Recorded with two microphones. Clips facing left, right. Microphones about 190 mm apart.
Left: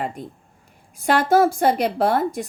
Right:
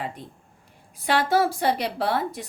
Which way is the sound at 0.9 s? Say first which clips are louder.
Left 5 dB; 45° left (ahead or behind).